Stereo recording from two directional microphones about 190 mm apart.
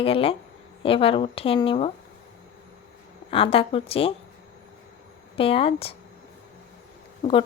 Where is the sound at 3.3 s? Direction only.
30° left (ahead or behind).